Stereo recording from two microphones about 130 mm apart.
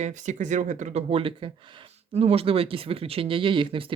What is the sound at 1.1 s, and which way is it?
Speech, 45° right (ahead or behind).